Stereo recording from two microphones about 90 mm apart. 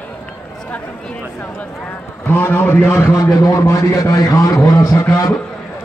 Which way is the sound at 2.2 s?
20° left (ahead or behind).